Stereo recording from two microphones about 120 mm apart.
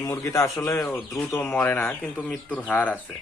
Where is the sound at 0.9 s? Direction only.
Centre (ahead or behind).